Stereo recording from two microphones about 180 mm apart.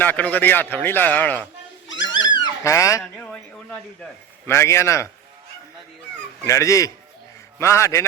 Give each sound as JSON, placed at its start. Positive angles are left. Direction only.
{"t": 0.0, "sound": "a man's voice", "side_deg": 10}
{"t": 2.3, "sound": "cat", "side_deg": 20}
{"t": 3.0, "sound": "a man's voice", "side_deg": 5}
{"t": 6.4, "sound": "a man's voice", "side_deg": 15}